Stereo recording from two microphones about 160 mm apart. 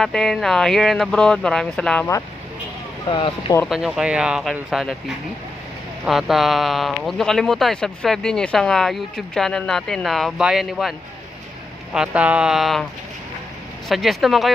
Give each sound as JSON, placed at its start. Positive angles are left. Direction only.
{"t": 0.0, "sound": "speech", "side_deg": 5}
{"t": 3.1, "sound": "speech", "side_deg": 30}
{"t": 3.6, "sound": "speech", "side_deg": 0}
{"t": 6.0, "sound": "speech", "side_deg": 0}
{"t": 13.8, "sound": "speech", "side_deg": 0}